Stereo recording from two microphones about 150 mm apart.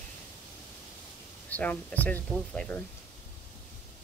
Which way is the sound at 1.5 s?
10° left (ahead or behind).